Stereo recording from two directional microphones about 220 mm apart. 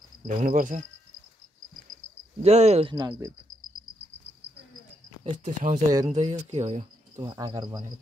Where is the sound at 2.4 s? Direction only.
30° right (ahead or behind).